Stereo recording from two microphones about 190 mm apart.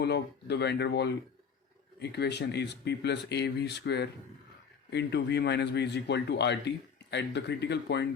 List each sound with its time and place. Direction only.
0.0 s speech: 60° left (ahead or behind)